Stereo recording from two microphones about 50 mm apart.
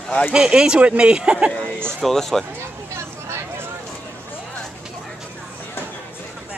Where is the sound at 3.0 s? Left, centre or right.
Right.